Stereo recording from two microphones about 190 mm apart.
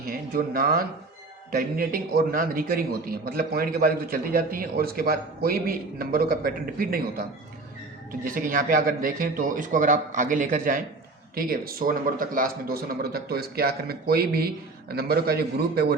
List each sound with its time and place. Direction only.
0.0 s a man's voice: 50° right (ahead or behind)